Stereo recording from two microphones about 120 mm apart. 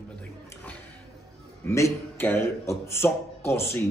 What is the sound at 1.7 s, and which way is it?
Speech, 25° left (ahead or behind).